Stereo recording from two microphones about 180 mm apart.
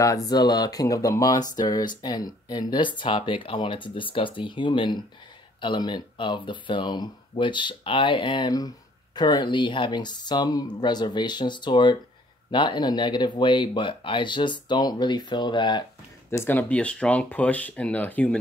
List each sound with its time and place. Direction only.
0.0 s speech: 20° left (ahead or behind)
16.3 s speech: 10° left (ahead or behind)